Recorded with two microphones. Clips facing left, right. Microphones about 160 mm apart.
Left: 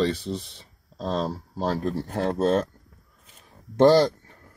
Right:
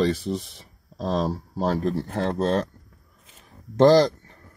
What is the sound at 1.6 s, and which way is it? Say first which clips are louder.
Speech: right 2 dB; centre (ahead or behind).